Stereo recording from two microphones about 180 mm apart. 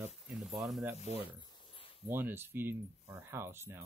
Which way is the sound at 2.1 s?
10° right (ahead or behind).